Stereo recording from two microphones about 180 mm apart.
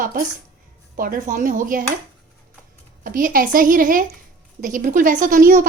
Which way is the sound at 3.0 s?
50° right (ahead or behind).